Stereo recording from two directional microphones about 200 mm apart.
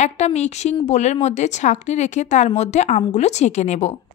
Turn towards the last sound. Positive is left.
turn(degrees=35)  # may be behind; listen again after turning